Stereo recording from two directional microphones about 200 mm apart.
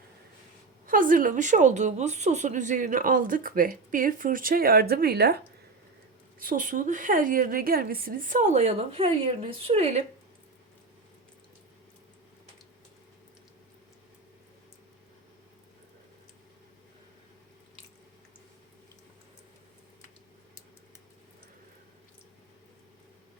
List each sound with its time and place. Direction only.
0.9 s speech: 40° right (ahead or behind)
6.4 s a woman's voice: 45° right (ahead or behind)